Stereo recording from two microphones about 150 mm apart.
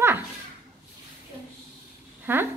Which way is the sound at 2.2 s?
15° right (ahead or behind).